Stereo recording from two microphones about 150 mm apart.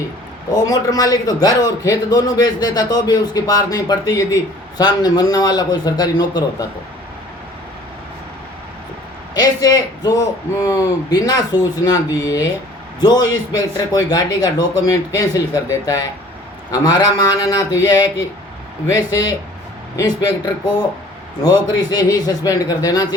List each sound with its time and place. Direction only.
0.5 s a man's voice: 25° left (ahead or behind)
9.3 s a man's voice: 25° left (ahead or behind)
16.7 s a man's voice: 25° left (ahead or behind)